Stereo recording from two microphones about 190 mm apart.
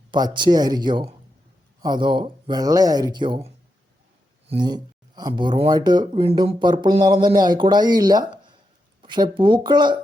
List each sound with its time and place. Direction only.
0.1 s speech: 25° right (ahead or behind)